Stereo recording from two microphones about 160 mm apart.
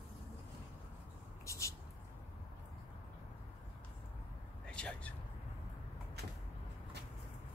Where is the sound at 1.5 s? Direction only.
20° left (ahead or behind).